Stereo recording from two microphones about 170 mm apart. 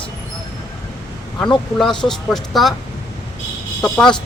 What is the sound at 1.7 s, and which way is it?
Speech, 5° left (ahead or behind).